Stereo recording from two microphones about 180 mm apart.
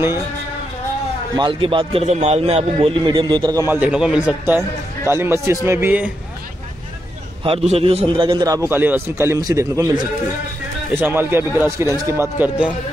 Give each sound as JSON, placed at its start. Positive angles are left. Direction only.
{"t": 1.3, "sound": "a man's voice", "side_deg": -25}
{"t": 5.1, "sound": "a man's voice", "side_deg": -15}
{"t": 7.4, "sound": "a man's voice", "side_deg": -35}